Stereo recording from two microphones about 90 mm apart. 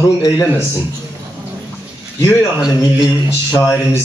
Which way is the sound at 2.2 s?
25° left (ahead or behind).